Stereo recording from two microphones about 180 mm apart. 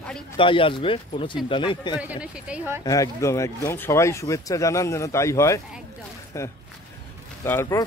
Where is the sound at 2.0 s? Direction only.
5° right (ahead or behind).